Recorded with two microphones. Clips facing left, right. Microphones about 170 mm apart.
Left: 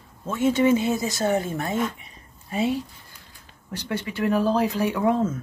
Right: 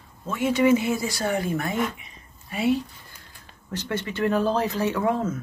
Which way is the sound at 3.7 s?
10° left (ahead or behind).